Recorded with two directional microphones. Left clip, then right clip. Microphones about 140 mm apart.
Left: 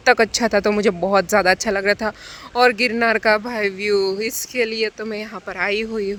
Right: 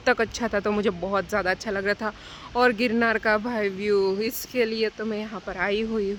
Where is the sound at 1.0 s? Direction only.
45° left (ahead or behind).